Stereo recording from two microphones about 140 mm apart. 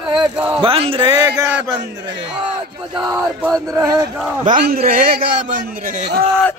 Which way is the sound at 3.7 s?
25° right (ahead or behind).